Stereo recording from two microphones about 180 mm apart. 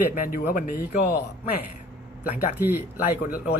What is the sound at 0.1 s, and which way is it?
Speech, 50° left (ahead or behind).